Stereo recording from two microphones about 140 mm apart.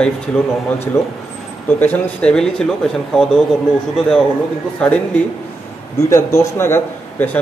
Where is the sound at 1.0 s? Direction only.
20° left (ahead or behind).